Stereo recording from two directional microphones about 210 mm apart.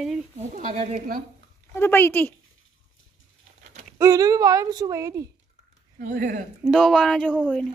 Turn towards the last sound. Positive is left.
turn(degrees=0)  # may be behind; listen again after turning